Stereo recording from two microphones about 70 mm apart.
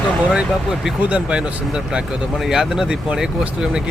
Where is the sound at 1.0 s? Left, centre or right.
Centre.